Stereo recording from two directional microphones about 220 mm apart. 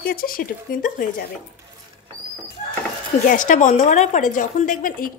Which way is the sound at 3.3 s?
35° left (ahead or behind).